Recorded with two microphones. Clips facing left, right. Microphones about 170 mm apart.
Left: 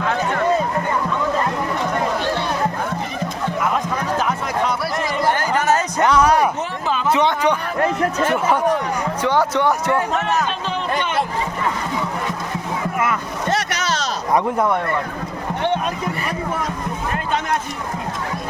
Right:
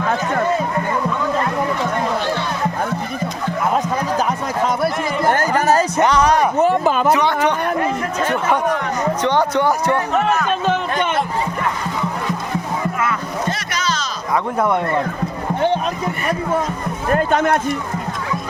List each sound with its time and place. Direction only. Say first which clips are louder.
4.3 s music: right 2 dB; 45° right (ahead or behind)
6.1 s a sound: left 3 dB; 5° left (ahead or behind)
6.6 s a sound: right 8 dB; 50° right (ahead or behind)
7.1 s a sound: left 2 dB; 25° left (ahead or behind)
7.3 s music: right 1 dB; 60° right (ahead or behind)
8.2 s chatter: right 1 dB; 10° left (ahead or behind)
9.2 s music: even; 5° left (ahead or behind)
13.7 s music: even; 70° left (ahead or behind)
17.1 s speech: right 7 dB; 50° right (ahead or behind)